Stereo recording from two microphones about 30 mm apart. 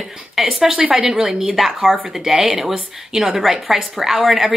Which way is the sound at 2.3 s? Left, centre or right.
Right.